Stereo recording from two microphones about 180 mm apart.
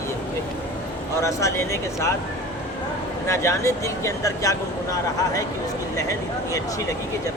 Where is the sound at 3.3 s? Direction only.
15° left (ahead or behind).